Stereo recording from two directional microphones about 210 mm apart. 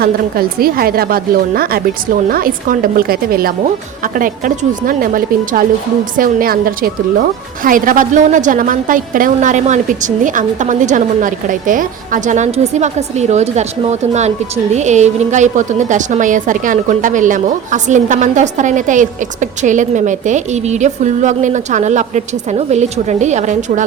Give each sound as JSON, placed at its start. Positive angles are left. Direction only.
{"t": 0.0, "sound": "a woman's voice", "side_deg": -45}